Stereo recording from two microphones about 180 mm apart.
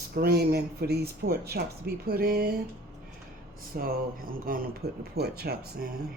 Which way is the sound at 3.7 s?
55° right (ahead or behind).